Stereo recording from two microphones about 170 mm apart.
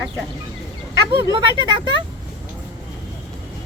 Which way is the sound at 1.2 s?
25° right (ahead or behind).